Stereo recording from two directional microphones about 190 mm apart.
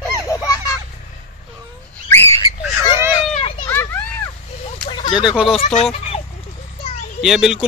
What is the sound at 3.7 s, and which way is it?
Children playing, 15° left (ahead or behind).